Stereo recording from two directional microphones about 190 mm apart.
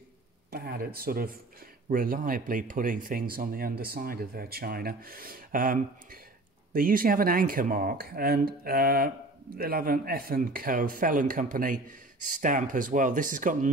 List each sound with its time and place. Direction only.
0.5 s speech: 55° right (ahead or behind)